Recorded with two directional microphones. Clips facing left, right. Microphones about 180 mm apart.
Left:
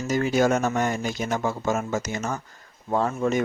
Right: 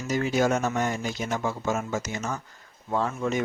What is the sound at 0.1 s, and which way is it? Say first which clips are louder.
Speech: left 2 dB; 50° left (ahead or behind).